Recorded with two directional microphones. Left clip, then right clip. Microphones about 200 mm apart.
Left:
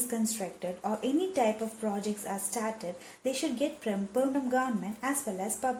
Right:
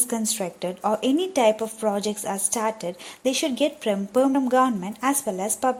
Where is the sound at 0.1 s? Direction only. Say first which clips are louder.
Right 6 dB; 30° right (ahead or behind).